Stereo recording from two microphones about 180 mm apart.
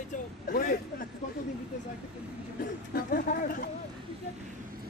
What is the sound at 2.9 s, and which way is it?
Speech, 55° left (ahead or behind).